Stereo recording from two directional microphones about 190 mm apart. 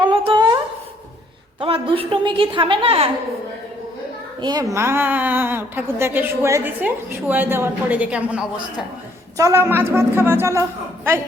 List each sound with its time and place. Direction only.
0.0 s a sound: 25° right (ahead or behind)
1.5 s a woman's voice: 30° right (ahead or behind)
4.4 s a woman's voice: 20° right (ahead or behind)